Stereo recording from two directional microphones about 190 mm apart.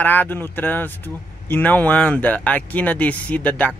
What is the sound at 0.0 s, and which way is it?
Speech, 10° left (ahead or behind).